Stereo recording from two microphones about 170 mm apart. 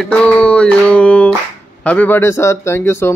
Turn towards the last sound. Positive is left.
turn(degrees=15)  # may be behind; listen again after turning